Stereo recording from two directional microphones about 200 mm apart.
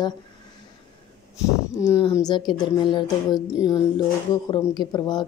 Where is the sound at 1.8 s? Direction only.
15° left (ahead or behind).